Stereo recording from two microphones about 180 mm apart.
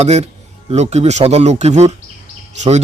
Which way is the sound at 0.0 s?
35° right (ahead or behind).